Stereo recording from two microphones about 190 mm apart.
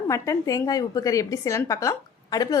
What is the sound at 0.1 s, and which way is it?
A woman's voice, 15° left (ahead or behind).